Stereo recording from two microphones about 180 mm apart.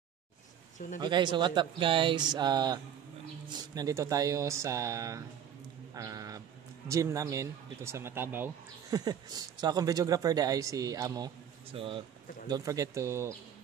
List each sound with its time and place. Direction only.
0.9 s speech: 25° right (ahead or behind)
8.9 s speech: 20° right (ahead or behind)